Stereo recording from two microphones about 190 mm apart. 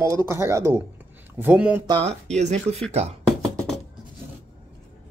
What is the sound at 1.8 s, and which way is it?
Speech, 30° right (ahead or behind).